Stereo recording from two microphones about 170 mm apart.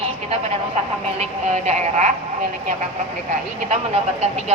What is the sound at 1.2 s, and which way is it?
Speech, 40° right (ahead or behind).